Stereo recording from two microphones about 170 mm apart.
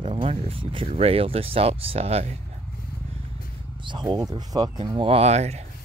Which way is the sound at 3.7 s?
25° right (ahead or behind).